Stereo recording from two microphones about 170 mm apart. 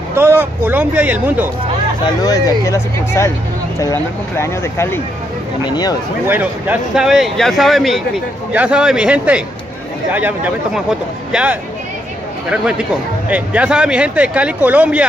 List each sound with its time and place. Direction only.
0.1 s speech: 15° right (ahead or behind)
2.2 s speech: 20° left (ahead or behind)
6.2 s speech: 10° right (ahead or behind)